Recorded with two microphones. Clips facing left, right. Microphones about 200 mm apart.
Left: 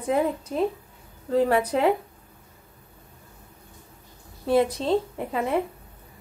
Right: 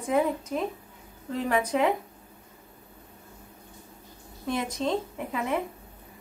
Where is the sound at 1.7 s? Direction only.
35° left (ahead or behind).